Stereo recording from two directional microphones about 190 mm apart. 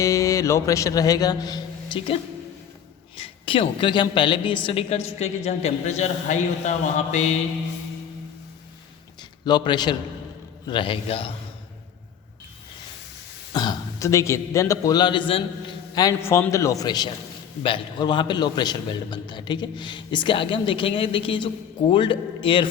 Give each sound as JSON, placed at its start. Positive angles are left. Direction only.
{"t": 0.0, "sound": "speech", "side_deg": 15}
{"t": 3.2, "sound": "a man's voice", "side_deg": 30}
{"t": 9.4, "sound": "a man's voice", "side_deg": 20}
{"t": 13.5, "sound": "a man's voice", "side_deg": 20}